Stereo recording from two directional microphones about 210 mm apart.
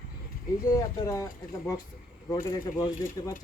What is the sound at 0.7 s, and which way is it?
Speech, 15° left (ahead or behind).